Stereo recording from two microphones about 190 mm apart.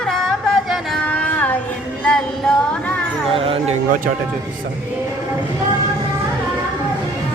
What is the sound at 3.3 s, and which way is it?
Speech, 30° right (ahead or behind).